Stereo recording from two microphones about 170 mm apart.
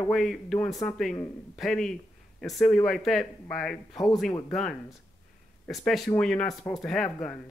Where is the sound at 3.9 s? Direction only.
20° left (ahead or behind).